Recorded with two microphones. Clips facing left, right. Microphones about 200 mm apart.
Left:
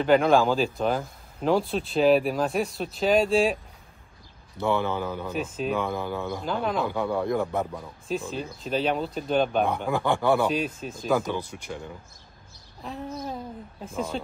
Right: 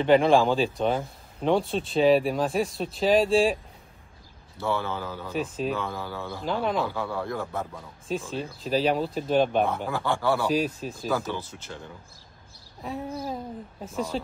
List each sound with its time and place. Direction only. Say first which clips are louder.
0.0 s speech: even; centre (ahead or behind)
4.6 s speech: left 3 dB; 20° left (ahead or behind)
5.3 s speech: right 3 dB; centre (ahead or behind)
5.8 s speech: left 4 dB; 15° left (ahead or behind)
6.4 s speech: right 2 dB; centre (ahead or behind)
6.9 s speech: left 5 dB; 20° left (ahead or behind)
8.1 s speech: even; centre (ahead or behind)
9.8 s speech: left 3 dB; 15° left (ahead or behind)
10.5 s speech: right 2 dB; centre (ahead or behind)
11.1 s speech: left 3 dB; 15° left (ahead or behind)
13.8 s speech: right 1 dB; centre (ahead or behind)